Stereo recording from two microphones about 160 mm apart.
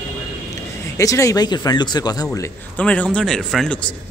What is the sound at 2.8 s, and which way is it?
Speech, 10° left (ahead or behind).